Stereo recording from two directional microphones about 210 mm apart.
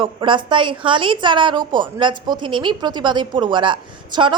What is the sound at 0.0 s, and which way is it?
A woman's voice, 25° right (ahead or behind).